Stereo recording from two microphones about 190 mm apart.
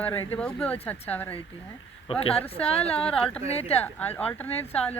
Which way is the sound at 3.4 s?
35° left (ahead or behind).